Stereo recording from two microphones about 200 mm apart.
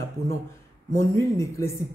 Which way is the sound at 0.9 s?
15° left (ahead or behind).